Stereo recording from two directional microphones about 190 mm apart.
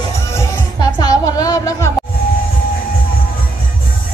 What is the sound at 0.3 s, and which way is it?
Music, 15° left (ahead or behind).